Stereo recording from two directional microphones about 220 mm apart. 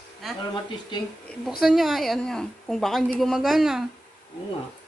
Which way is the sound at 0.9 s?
20° left (ahead or behind).